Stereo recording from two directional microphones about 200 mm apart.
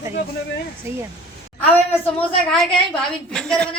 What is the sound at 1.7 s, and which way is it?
A woman's voice, 10° left (ahead or behind).